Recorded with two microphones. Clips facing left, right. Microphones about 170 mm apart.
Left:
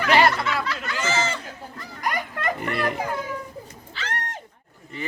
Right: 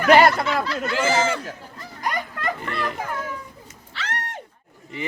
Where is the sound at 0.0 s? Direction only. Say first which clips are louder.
Right 4 dB; 45° right (ahead or behind).